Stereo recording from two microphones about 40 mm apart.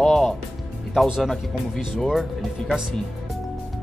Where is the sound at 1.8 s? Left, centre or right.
Centre.